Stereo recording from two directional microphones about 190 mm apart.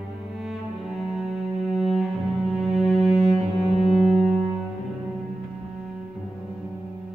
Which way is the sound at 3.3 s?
35° right (ahead or behind).